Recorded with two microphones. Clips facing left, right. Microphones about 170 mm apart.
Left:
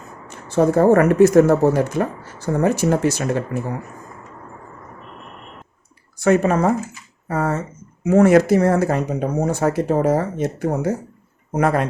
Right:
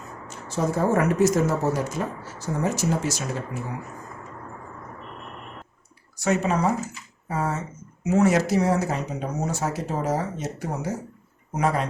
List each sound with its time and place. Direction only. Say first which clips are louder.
0.3 s speech: left 9 dB; 60° left (ahead or behind)
6.1 s speech: left 7 dB; 55° left (ahead or behind)